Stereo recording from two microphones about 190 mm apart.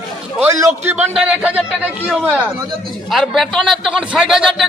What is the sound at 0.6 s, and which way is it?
A man's voice, 10° right (ahead or behind).